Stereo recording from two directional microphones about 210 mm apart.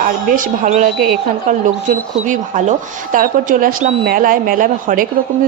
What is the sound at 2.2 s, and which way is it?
Speech, 35° right (ahead or behind).